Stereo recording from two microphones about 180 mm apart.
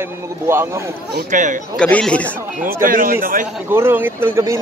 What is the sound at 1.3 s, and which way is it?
Speech, 45° right (ahead or behind).